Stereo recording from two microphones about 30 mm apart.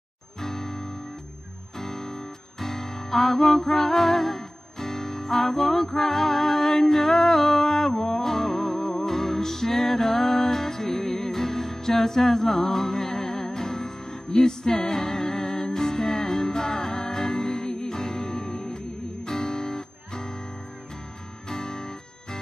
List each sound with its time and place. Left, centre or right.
0.4 s music: centre
14.3 s music: centre
14.9 s music: centre
21.5 s guitar: centre